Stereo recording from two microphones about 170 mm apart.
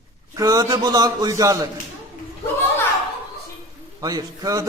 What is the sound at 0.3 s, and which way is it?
A man's voice, 20° right (ahead or behind).